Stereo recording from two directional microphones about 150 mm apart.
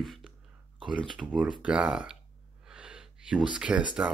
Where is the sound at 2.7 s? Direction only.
5° right (ahead or behind).